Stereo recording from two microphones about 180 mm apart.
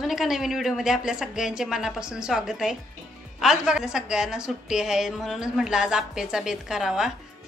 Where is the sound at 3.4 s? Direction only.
5° right (ahead or behind).